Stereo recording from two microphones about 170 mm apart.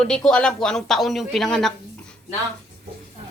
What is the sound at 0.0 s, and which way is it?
Speech, 5° left (ahead or behind).